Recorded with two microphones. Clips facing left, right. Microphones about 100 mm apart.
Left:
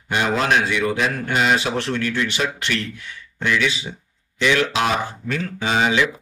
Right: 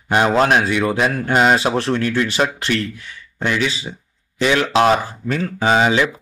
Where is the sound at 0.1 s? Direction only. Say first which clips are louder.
Right 5 dB; 40° right (ahead or behind).